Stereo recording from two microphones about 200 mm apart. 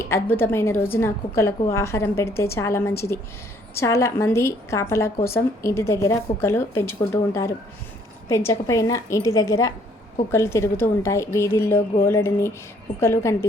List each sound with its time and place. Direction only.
0.1 s a woman's voice: 10° left (ahead or behind)